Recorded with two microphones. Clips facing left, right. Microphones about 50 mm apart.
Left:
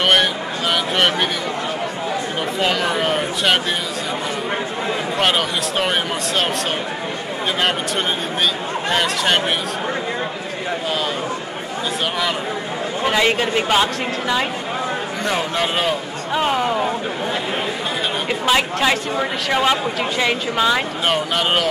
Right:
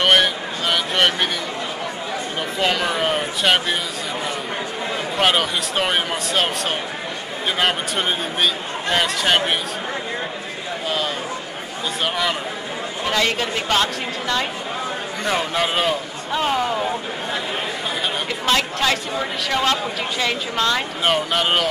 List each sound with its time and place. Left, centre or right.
0.0 s speech: centre
2.6 s speech: centre
5.1 s speech: centre
8.9 s speech: centre
13.0 s speech: centre
15.2 s speech: centre
16.3 s speech: centre
18.4 s speech: centre
21.0 s speech: centre